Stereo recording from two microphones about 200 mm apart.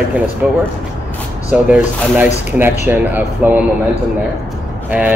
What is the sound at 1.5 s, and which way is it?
Speech, 5° right (ahead or behind).